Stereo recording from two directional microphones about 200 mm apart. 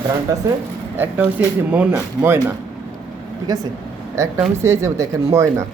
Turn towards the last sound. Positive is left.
turn(degrees=-15)  # may be behind; listen again after turning